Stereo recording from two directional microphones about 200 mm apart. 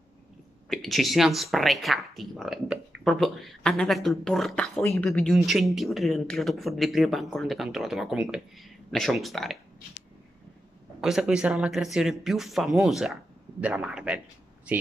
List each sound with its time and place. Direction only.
0.7 s speech: centre (ahead or behind)
11.0 s speech: centre (ahead or behind)